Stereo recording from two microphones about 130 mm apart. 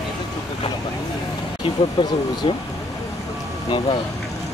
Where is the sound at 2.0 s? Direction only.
35° left (ahead or behind).